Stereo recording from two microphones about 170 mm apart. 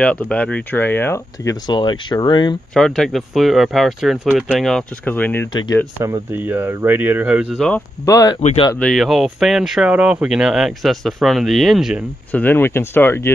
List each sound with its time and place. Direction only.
0.0 s speech: 5° left (ahead or behind); by 2.5 s 25° left (ahead or behind)
2.7 s speech: centre (ahead or behind)
5.5 s speech: 25° left (ahead or behind)
5.9 s speech: 10° right (ahead or behind)
8.0 s speech: 20° left (ahead or behind)
8.7 s speech: 5° left (ahead or behind)
12.3 s speech: 10° left (ahead or behind)